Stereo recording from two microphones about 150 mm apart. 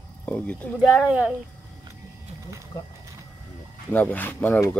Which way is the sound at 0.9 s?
5° right (ahead or behind).